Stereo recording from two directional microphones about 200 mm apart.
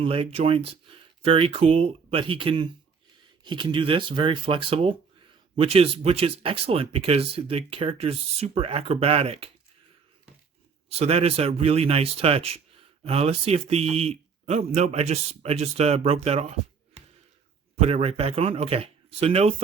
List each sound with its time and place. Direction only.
0.0 s speech: 30° right (ahead or behind)
10.8 s speech: 30° right (ahead or behind)
17.7 s speech: 30° right (ahead or behind)